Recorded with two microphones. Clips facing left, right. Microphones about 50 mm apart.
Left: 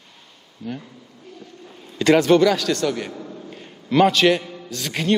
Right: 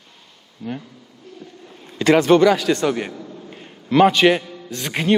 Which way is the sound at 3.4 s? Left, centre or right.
Centre.